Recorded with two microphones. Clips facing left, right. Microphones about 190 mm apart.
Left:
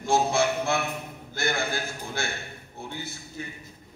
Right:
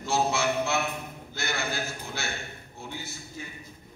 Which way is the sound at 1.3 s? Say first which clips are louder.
Left 4 dB; 50° left (ahead or behind).